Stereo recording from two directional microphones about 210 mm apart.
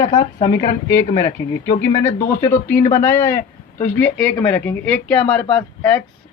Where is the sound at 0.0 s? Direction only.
15° left (ahead or behind).